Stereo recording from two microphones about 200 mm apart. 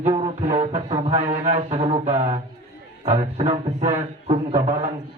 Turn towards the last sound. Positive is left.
turn(degrees=-30)  # may be behind; listen again after turning